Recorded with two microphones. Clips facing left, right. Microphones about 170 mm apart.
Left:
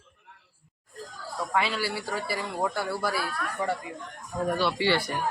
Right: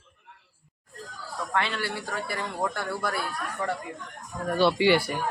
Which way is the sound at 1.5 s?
5° left (ahead or behind).